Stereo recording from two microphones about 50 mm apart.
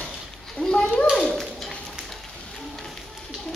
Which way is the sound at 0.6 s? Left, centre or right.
Centre.